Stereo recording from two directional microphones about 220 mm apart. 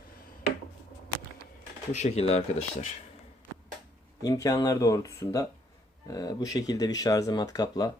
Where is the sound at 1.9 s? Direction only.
30° left (ahead or behind).